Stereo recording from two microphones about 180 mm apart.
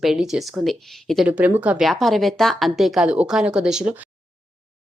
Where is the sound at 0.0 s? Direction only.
Centre (ahead or behind).